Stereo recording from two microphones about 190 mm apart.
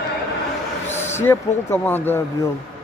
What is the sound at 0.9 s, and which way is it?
Speech, 10° left (ahead or behind).